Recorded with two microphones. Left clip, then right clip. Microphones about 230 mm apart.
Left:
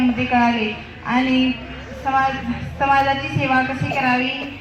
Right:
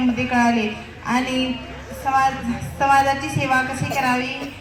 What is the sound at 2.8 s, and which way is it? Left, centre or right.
Music, right.